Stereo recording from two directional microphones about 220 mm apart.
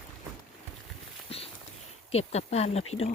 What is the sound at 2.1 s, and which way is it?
Speech, 30° left (ahead or behind).